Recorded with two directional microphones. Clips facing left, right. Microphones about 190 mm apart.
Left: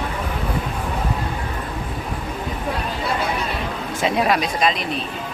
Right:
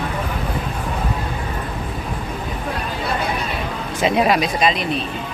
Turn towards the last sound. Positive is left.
turn(degrees=0)  # may be behind; listen again after turning